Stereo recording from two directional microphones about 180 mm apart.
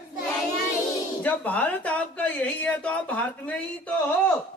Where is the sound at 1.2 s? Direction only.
10° left (ahead or behind).